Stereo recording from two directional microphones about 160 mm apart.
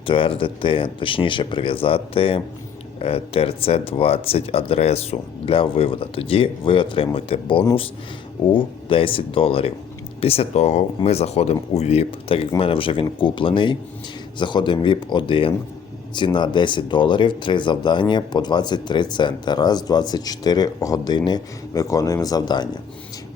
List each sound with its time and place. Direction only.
0.0 s speech: 30° left (ahead or behind)